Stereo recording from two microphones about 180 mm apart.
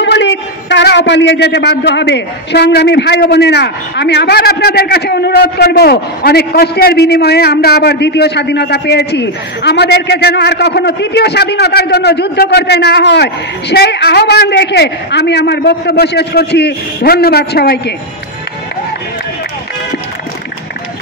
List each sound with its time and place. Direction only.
0.0 s speech: 80° left; by 17.9 s 65° left (ahead or behind)